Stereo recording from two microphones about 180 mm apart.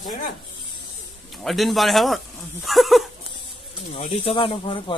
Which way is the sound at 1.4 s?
Centre (ahead or behind).